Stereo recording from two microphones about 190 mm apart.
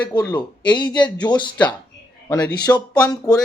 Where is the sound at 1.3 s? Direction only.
25° left (ahead or behind).